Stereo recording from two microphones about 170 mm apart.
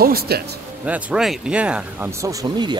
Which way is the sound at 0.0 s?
65° right (ahead or behind).